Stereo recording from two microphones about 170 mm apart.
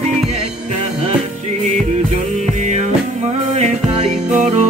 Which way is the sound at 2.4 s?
45° right (ahead or behind).